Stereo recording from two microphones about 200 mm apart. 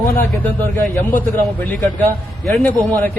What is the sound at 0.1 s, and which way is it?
A man's voice, 10° left (ahead or behind).